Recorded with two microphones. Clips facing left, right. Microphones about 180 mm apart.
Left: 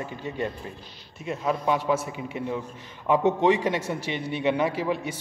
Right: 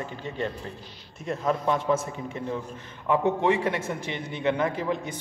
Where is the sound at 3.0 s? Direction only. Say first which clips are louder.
Left 2 dB; 20° left (ahead or behind).